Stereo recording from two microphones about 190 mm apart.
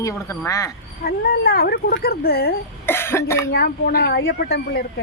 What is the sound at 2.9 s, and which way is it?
Speech, 10° left (ahead or behind).